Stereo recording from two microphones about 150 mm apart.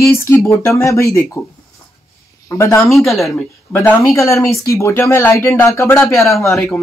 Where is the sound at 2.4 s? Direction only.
20° left (ahead or behind).